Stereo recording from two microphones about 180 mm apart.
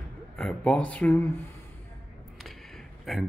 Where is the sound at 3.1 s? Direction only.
Centre (ahead or behind).